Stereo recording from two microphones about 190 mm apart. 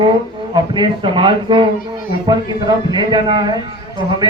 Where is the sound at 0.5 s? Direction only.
25° right (ahead or behind).